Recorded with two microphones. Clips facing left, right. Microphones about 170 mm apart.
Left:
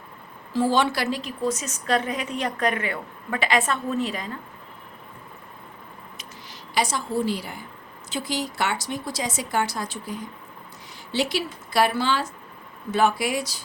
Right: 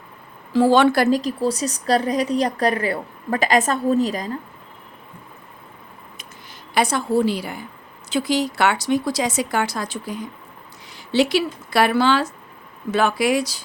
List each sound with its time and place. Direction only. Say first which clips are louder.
0.5 s a woman's voice: right 7 dB; 70° right (ahead or behind); by 4.3 s 40° right (ahead or behind)
6.7 s speech: right 6 dB; 60° right (ahead or behind)
12.9 s speech: right 3 dB; 85° right